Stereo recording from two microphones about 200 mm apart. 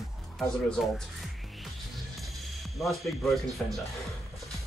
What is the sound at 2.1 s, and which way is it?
Speech, centre (ahead or behind).